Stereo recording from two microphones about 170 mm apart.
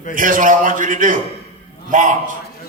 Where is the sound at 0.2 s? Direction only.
50° right (ahead or behind).